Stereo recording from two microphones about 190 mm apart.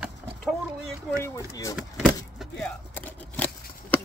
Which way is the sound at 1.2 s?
15° left (ahead or behind).